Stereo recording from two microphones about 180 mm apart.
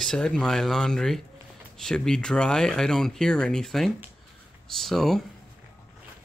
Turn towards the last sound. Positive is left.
turn(degrees=0)  # may be behind; listen again after turning